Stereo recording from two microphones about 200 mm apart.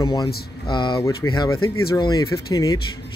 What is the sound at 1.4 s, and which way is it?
Speech, 90° left.